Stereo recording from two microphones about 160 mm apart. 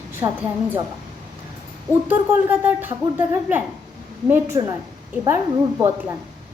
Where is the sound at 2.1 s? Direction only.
10° right (ahead or behind).